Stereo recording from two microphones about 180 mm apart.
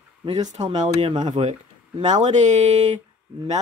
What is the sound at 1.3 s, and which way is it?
Speech, 40° right (ahead or behind).